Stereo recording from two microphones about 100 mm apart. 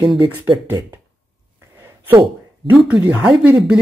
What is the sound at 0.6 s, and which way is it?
Speech, 20° right (ahead or behind).